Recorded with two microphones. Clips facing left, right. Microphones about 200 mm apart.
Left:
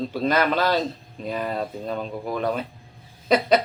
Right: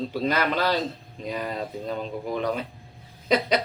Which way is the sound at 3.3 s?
50° left (ahead or behind).